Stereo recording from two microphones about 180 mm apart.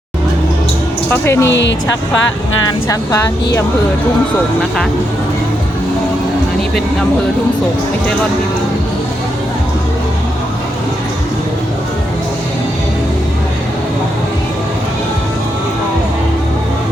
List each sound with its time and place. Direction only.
1.1 s speech: 15° left (ahead or behind)
1.5 s speech: 90° left
2.9 s speech: 20° left (ahead or behind)